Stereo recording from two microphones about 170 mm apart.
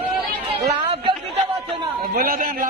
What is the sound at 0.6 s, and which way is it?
Chatter, 30° right (ahead or behind).